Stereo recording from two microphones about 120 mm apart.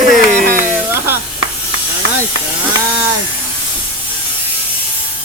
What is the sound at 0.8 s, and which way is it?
Sizzle, 20° right (ahead or behind).